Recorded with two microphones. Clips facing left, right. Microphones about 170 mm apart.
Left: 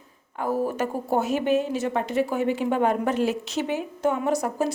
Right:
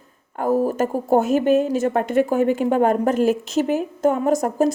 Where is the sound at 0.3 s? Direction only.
45° right (ahead or behind).